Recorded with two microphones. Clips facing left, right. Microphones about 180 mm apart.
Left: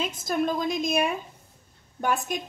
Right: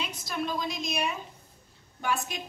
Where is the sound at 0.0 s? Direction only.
50° left (ahead or behind).